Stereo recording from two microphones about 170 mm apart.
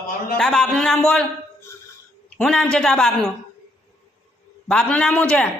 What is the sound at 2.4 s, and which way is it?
Speech, 5° left (ahead or behind).